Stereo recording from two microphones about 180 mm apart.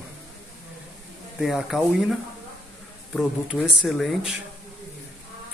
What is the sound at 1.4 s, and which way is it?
Speech, centre (ahead or behind).